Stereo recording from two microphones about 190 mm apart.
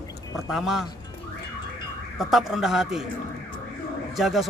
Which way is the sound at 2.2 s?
Centre (ahead or behind).